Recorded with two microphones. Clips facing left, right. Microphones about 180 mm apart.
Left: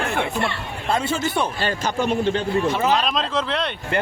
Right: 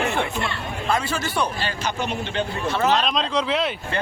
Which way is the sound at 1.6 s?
45° left (ahead or behind).